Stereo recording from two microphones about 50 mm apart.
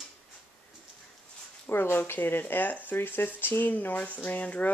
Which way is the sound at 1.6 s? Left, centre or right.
Left.